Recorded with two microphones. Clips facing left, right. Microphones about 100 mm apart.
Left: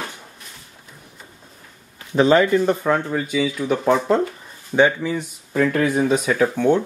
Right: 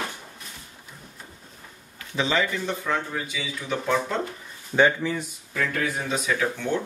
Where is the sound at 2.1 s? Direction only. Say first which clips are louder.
Left 10 dB; 50° left (ahead or behind).